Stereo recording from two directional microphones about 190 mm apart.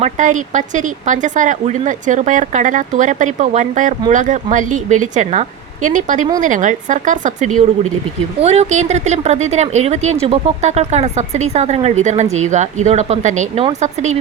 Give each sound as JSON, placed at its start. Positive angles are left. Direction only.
{"t": 0.0, "sound": "speech", "side_deg": -40}